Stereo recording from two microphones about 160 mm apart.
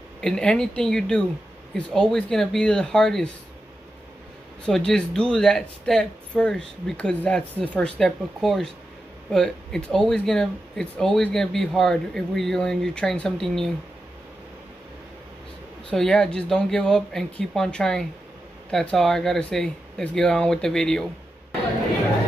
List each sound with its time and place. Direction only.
0.2 s speech: 5° left (ahead or behind)
4.6 s speech: 5° left (ahead or behind)
15.9 s speech: 5° left (ahead or behind)